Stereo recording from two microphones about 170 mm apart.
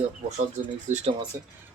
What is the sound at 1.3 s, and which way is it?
Speech, 20° right (ahead or behind).